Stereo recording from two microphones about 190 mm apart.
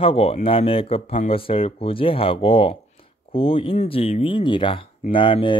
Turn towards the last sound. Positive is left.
turn(degrees=25)  # may be behind; listen again after turning